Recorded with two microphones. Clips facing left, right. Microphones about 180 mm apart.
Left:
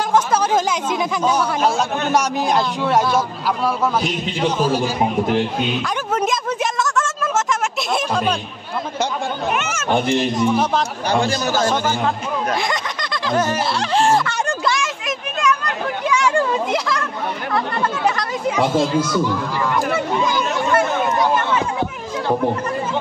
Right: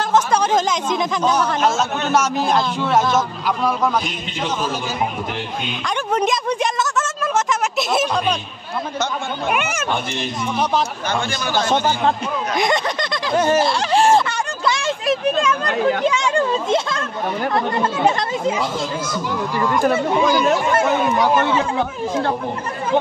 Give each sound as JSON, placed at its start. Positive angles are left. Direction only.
{"t": 0.1, "sound": "speech", "side_deg": 10}
{"t": 4.4, "sound": "speech", "side_deg": 10}
{"t": 6.1, "sound": "a sound", "side_deg": 0}
{"t": 9.5, "sound": "a child's voice", "side_deg": -10}
{"t": 11.1, "sound": "a man's voice", "side_deg": 35}
{"t": 12.5, "sound": "speech", "side_deg": -20}
{"t": 14.8, "sound": "a sound", "side_deg": -30}
{"t": 16.1, "sound": "speech", "side_deg": -20}